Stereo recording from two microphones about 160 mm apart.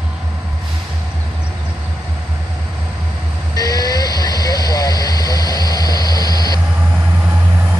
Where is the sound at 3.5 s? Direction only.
25° left (ahead or behind).